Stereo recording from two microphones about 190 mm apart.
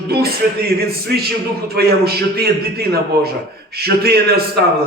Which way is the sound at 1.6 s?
55° right (ahead or behind).